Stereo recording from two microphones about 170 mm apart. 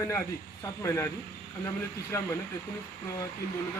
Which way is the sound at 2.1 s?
15° left (ahead or behind).